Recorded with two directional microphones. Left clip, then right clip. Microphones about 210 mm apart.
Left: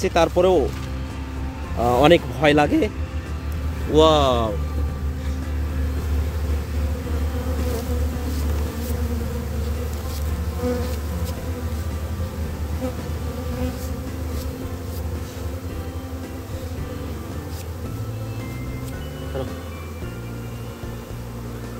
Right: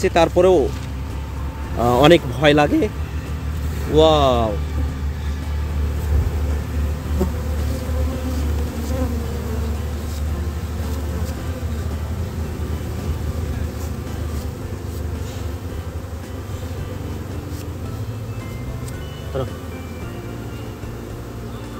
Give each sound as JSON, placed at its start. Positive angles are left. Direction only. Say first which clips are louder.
{"t": 0.0, "sound": "speech", "louder": "right 3 dB", "side_deg": 5}
{"t": 1.8, "sound": "speech", "louder": "right 2 dB", "side_deg": 0}
{"t": 2.4, "sound": "speech", "louder": "right 2 dB", "side_deg": 15}
{"t": 3.9, "sound": "speech", "louder": "right 2 dB", "side_deg": 25}